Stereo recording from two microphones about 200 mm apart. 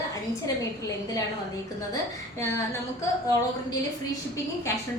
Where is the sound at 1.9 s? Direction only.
15° left (ahead or behind).